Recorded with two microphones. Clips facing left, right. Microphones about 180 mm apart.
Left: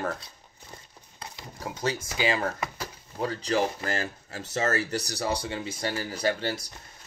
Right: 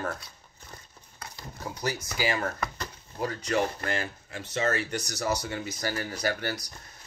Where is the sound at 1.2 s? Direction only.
25° left (ahead or behind).